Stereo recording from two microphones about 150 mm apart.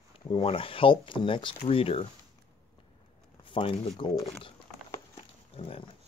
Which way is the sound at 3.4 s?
35° left (ahead or behind).